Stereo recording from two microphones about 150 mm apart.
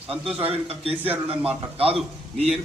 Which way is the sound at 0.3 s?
40° right (ahead or behind).